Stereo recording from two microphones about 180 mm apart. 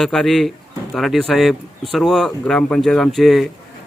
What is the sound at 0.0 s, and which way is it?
Speech, centre (ahead or behind).